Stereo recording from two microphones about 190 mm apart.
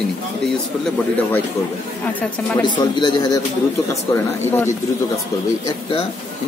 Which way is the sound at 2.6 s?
20° left (ahead or behind).